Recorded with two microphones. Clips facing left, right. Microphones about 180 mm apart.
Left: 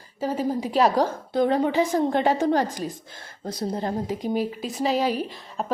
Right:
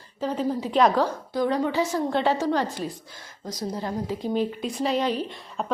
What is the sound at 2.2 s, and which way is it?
Speech, 45° left (ahead or behind).